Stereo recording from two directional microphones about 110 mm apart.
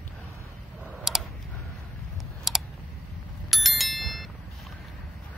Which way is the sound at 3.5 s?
Centre (ahead or behind).